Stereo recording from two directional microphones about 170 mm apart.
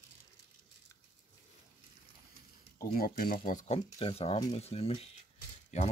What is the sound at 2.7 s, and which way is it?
Speech, 60° left (ahead or behind).